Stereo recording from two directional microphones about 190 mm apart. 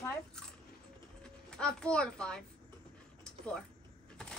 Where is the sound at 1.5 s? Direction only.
5° left (ahead or behind).